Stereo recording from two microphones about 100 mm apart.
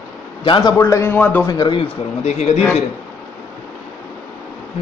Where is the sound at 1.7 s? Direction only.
80° left.